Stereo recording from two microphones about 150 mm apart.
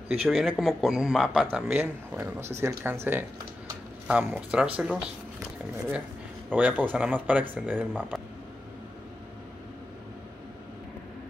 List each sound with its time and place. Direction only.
0.3 s speech: centre (ahead or behind)